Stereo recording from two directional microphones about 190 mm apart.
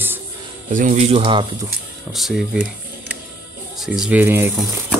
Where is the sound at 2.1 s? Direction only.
Centre (ahead or behind).